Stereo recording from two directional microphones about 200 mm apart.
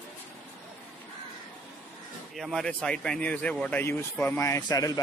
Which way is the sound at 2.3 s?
Centre (ahead or behind).